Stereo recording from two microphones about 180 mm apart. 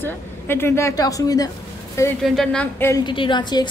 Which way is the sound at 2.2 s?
5° left (ahead or behind).